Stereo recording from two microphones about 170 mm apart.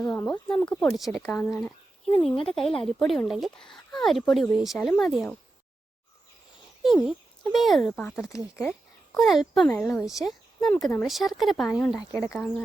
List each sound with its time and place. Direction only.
0.0 s speech: 5° left (ahead or behind)
2.0 s speech: 35° left (ahead or behind)
2.5 s speech: centre (ahead or behind)
6.8 s speech: centre (ahead or behind)